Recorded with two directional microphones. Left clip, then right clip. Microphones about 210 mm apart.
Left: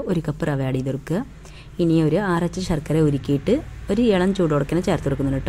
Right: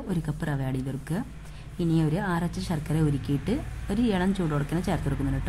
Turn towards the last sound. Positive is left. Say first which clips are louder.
# left 8 dB
turn(degrees=25)  # may be behind; listen again after turning